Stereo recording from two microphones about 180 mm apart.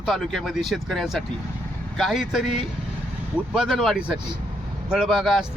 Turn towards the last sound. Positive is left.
turn(degrees=0)  # may be behind; listen again after turning